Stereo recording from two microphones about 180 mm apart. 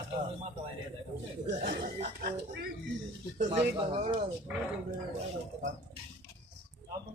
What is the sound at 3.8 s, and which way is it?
Speech, 30° right (ahead or behind).